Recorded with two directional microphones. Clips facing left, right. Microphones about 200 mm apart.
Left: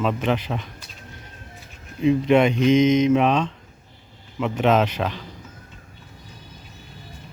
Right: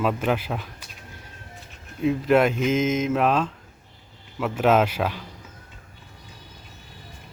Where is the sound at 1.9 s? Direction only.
5° right (ahead or behind).